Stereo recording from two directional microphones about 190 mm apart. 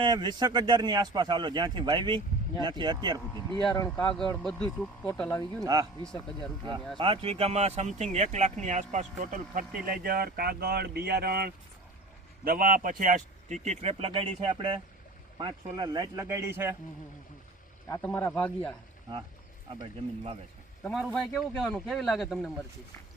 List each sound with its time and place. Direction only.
0.0 s a man's voice: 20° right (ahead or behind)
3.3 s speech: 20° left (ahead or behind)
3.8 s speech: 5° left (ahead or behind)
5.6 s a man's voice: 20° right (ahead or behind)
6.1 s speech: 5° left (ahead or behind)
6.9 s speech: 25° right (ahead or behind)
17.8 s a man's voice: 15° left (ahead or behind)
19.8 s a man's voice: 30° right (ahead or behind)
20.8 s speech: 5° left (ahead or behind)